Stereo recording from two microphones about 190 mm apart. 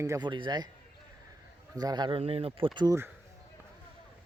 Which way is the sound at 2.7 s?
15° right (ahead or behind).